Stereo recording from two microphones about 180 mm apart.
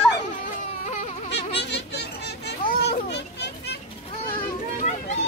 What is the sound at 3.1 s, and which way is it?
Children playing, 70° left (ahead or behind).